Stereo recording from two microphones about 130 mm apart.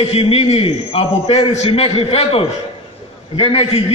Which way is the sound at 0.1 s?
50° left (ahead or behind).